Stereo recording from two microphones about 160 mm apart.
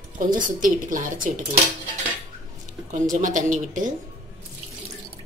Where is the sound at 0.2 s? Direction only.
55° right (ahead or behind).